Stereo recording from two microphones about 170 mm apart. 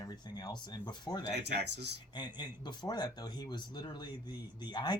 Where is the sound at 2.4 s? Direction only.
25° left (ahead or behind).